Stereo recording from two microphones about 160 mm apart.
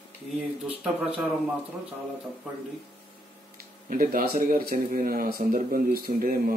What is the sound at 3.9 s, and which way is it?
Speech, 60° right (ahead or behind).